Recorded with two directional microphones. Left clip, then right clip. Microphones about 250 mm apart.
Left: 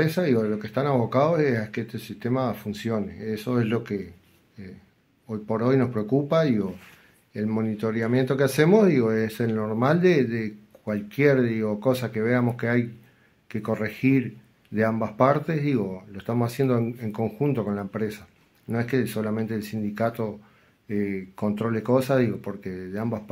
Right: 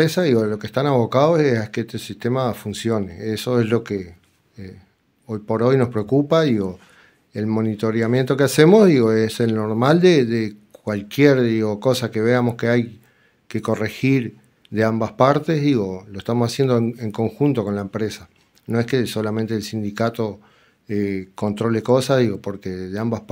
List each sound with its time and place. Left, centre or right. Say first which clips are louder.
0.0 s speech: right 6 dB; right